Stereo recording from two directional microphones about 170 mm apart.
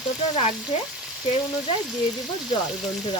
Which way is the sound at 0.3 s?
35° left (ahead or behind).